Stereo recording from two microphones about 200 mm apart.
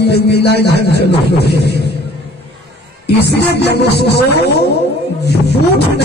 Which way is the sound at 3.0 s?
55° left (ahead or behind).